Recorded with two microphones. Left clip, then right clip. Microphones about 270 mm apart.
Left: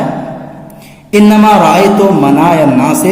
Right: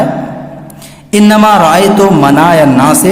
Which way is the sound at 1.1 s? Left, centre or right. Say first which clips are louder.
Even; right.